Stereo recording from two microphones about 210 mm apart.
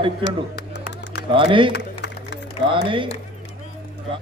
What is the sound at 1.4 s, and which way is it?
Speech, 25° right (ahead or behind).